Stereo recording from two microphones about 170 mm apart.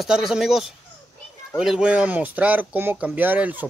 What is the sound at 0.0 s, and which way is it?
Speech, centre (ahead or behind).